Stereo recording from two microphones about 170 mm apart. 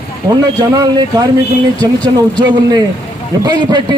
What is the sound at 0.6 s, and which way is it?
Speech, 25° right (ahead or behind).